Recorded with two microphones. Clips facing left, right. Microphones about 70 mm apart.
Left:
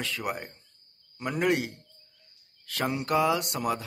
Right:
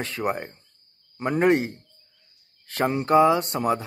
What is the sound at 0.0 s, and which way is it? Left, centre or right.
Speech, right.